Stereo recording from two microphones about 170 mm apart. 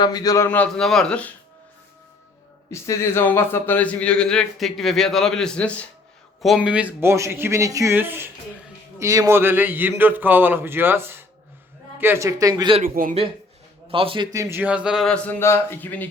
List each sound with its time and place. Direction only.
0.0 s a man's voice: 25° left (ahead or behind); by 1.3 s 5° left (ahead or behind)
2.6 s a man's voice: 15° left (ahead or behind)
6.4 s a man's voice: 5° right (ahead or behind); by 12.7 s 20° right (ahead or behind)
12.8 s a man's voice: 55° right (ahead or behind)
13.9 s a man's voice: 30° right (ahead or behind)
14.3 s speech: 15° right (ahead or behind); by 16.0 s 10° left (ahead or behind)